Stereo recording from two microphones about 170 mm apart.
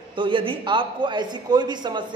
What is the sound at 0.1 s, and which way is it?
A man's voice, 30° right (ahead or behind).